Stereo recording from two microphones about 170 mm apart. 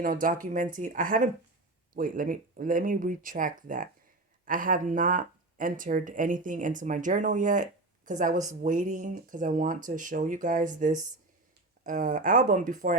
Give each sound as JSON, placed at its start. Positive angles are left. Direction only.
{"t": 0.0, "sound": "speech", "side_deg": -55}